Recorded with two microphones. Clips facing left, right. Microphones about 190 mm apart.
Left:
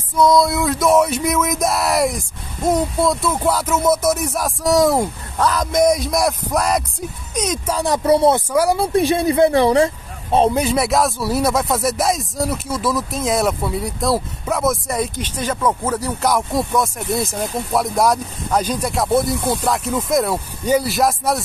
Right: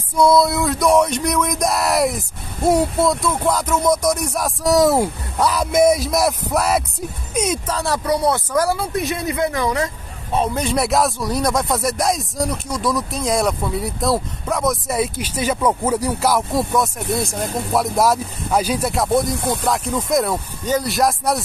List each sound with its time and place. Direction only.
0.1 s a sound: 10° right (ahead or behind)
0.4 s speech: centre (ahead or behind)
7.6 s speech: 15° left (ahead or behind); by 9.8 s 30° left (ahead or behind)
10.5 s speech: 5° left (ahead or behind)
20.6 s speech: 10° left (ahead or behind)
20.9 s speech: centre (ahead or behind)